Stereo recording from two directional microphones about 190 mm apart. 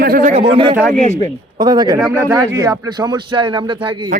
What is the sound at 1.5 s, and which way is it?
A man's voice, 20° right (ahead or behind).